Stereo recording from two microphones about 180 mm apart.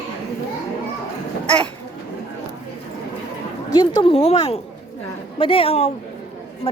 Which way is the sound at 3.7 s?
25° left (ahead or behind).